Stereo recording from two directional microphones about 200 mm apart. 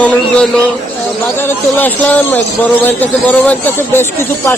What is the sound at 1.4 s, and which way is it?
Speech, 10° left (ahead or behind).